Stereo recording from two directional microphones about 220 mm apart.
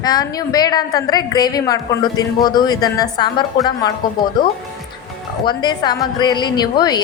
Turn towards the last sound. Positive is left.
turn(degrees=20)  # may be behind; listen again after turning